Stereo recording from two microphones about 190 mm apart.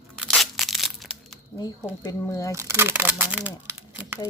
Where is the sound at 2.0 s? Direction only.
20° left (ahead or behind).